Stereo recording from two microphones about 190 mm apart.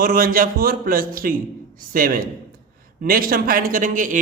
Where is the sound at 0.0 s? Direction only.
50° right (ahead or behind).